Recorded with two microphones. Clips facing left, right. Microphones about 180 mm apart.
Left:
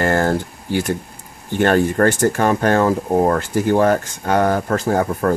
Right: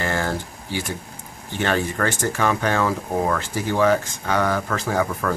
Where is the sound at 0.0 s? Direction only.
50° left (ahead or behind).